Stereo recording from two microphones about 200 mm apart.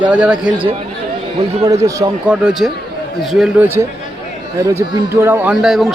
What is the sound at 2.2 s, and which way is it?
A man's voice, 5° right (ahead or behind).